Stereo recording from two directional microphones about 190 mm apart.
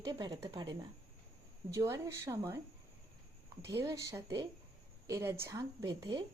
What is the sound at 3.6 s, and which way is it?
Speech, 15° right (ahead or behind).